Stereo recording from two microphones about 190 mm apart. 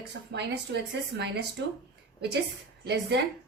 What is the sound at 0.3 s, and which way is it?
A woman's voice, 65° right (ahead or behind).